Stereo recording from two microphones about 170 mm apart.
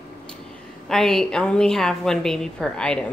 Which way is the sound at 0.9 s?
5° left (ahead or behind).